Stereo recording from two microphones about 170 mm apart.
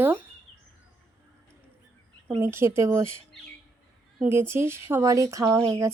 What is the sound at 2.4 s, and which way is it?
Speech, 15° right (ahead or behind).